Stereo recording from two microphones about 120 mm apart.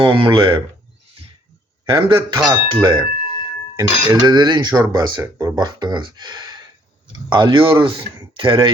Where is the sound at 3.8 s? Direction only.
35° right (ahead or behind).